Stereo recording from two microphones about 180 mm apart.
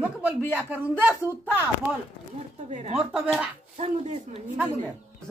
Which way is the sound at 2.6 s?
40° right (ahead or behind).